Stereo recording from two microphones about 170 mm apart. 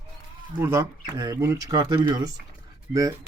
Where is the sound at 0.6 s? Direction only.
15° right (ahead or behind).